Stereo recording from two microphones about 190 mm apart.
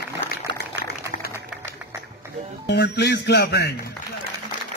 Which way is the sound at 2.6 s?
60° left (ahead or behind).